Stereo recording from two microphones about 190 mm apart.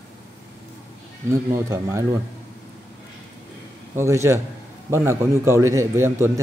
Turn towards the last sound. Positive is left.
turn(degrees=-15)  # may be behind; listen again after turning